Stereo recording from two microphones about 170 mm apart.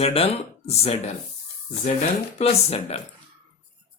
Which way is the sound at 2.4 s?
40° left (ahead or behind).